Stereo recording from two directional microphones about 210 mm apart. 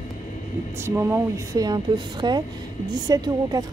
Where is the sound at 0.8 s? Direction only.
10° right (ahead or behind).